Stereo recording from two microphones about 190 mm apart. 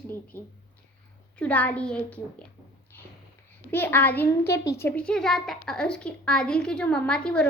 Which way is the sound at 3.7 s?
10° left (ahead or behind).